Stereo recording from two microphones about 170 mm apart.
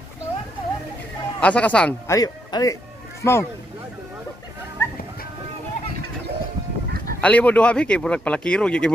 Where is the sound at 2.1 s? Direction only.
20° left (ahead or behind).